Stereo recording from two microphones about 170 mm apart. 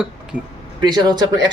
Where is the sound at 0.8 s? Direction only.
25° right (ahead or behind).